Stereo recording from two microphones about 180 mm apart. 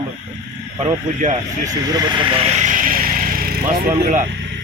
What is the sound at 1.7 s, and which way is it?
Vehicle, 25° right (ahead or behind).